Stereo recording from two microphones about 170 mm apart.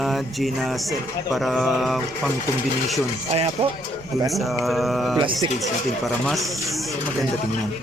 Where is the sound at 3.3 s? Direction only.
35° right (ahead or behind).